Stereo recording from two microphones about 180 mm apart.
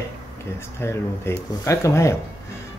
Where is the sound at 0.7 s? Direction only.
15° left (ahead or behind).